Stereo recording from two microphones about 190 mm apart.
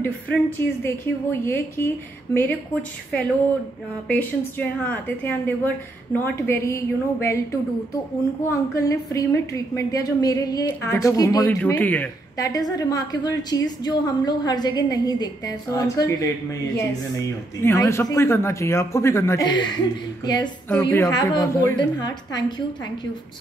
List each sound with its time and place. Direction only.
0.0 s speech: 10° left (ahead or behind)
4.1 s speech: 10° left (ahead or behind)
8.5 s a woman's voice: 15° left (ahead or behind)
20.6 s speech: 10° left (ahead or behind)
21.1 s a woman's voice: 20° left (ahead or behind)